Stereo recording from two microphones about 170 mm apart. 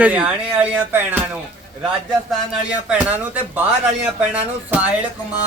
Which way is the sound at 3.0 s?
10° right (ahead or behind).